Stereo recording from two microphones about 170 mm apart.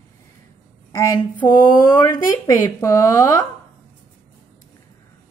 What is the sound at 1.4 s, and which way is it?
Speech, 25° left (ahead or behind).